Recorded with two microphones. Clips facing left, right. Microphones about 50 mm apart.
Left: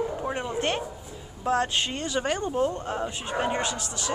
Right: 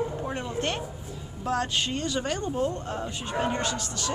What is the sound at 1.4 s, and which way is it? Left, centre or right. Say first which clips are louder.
Speech: left 2 dB; left.